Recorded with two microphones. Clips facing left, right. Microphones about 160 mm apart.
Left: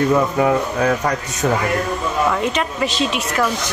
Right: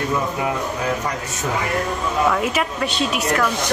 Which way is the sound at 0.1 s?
60° left (ahead or behind).